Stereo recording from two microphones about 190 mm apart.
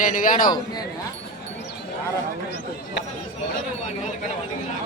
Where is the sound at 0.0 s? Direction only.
45° left (ahead or behind).